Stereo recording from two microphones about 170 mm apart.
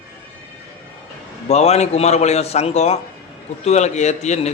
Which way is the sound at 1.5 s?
40° left (ahead or behind).